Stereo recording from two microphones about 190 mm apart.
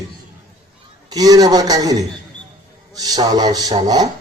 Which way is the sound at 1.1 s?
20° right (ahead or behind).